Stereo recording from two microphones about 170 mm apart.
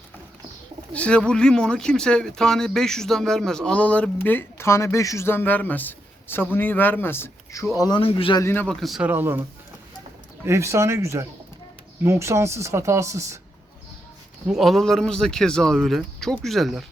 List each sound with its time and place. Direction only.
0.9 s speech: 5° left (ahead or behind)
7.8 s speech: 25° left (ahead or behind)
8.4 s speech: 15° left (ahead or behind)
8.6 s a man's voice: centre (ahead or behind)
9.0 s speech: 10° right (ahead or behind)
14.4 s a man's voice: centre (ahead or behind)